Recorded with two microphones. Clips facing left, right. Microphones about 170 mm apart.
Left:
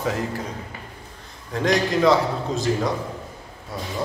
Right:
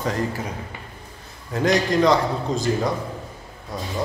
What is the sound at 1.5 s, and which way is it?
A man's voice, centre (ahead or behind).